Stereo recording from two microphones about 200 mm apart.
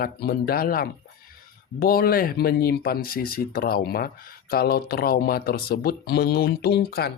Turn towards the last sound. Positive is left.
turn(degrees=50)  # may be behind; listen again after turning